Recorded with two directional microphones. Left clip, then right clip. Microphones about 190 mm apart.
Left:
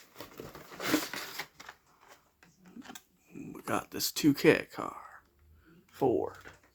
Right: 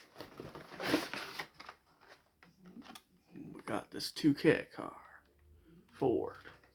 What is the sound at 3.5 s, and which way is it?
Speech, 45° left (ahead or behind).